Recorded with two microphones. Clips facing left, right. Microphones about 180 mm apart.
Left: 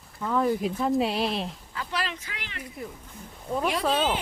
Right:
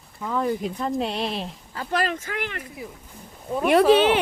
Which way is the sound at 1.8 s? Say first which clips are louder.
Right 7 dB; 50° right (ahead or behind).